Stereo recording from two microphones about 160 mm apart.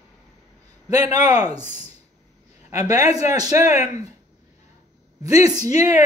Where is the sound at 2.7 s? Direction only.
20° right (ahead or behind).